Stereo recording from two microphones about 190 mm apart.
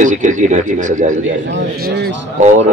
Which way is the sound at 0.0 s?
40° right (ahead or behind).